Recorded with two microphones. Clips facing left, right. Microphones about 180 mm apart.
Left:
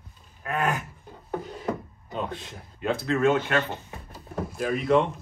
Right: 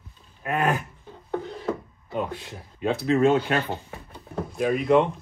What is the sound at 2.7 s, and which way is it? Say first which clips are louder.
Speech: right 4 dB; 20° right (ahead or behind).